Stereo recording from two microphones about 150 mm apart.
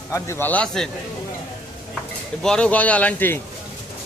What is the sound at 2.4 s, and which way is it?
Speech, 5° left (ahead or behind).